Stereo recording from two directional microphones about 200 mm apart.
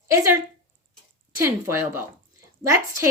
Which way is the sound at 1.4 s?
10° right (ahead or behind).